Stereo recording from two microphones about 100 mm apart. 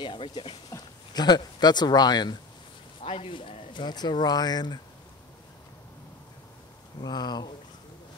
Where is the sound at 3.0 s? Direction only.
70° left (ahead or behind); by 4.8 s 45° left (ahead or behind).